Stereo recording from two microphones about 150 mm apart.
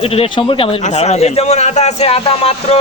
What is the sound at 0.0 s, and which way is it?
Speech, 40° left (ahead or behind).